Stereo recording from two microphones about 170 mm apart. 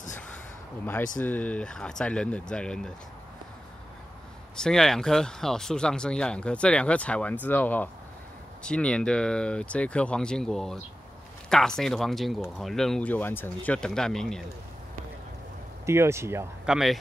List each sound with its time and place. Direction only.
0.8 s speech: 10° left (ahead or behind)
4.6 s speech: 5° left (ahead or behind)
15.8 s speech: 15° right (ahead or behind)
16.6 s speech: 5° right (ahead or behind)